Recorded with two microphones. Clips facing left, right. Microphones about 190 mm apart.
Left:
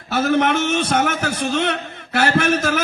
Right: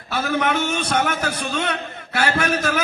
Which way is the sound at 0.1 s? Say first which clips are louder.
Left 4 dB; 45° left (ahead or behind).